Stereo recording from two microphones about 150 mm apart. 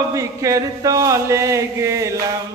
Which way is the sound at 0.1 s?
20° right (ahead or behind).